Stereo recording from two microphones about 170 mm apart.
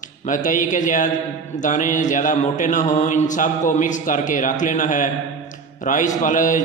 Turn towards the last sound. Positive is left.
turn(degrees=50)  # may be behind; listen again after turning